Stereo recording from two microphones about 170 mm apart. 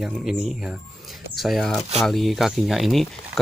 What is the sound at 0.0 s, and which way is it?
Speech, centre (ahead or behind).